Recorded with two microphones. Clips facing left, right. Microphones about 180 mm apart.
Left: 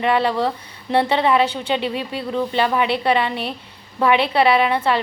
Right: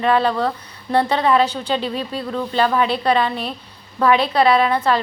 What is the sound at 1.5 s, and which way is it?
Speech, 65° left (ahead or behind).